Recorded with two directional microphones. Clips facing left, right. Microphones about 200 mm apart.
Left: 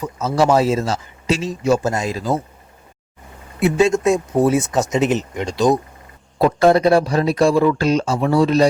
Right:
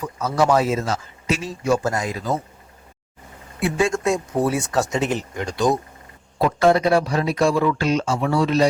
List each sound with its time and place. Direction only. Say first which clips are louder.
0.0 s speech: left 3 dB; 25° left (ahead or behind)
3.6 s speech: left 5 dB; 20° left (ahead or behind)
6.4 s speech: left 4 dB; 35° left (ahead or behind)